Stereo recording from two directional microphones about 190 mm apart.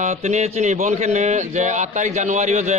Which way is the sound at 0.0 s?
35° right (ahead or behind).